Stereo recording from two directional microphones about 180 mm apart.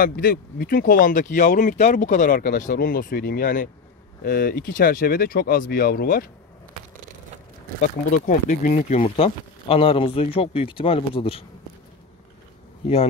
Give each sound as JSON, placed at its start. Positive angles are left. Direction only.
{"t": 0.0, "sound": "speech", "side_deg": 55}
{"t": 7.8, "sound": "speech", "side_deg": 45}
{"t": 9.0, "sound": "speech", "side_deg": 30}
{"t": 12.8, "sound": "speech", "side_deg": 35}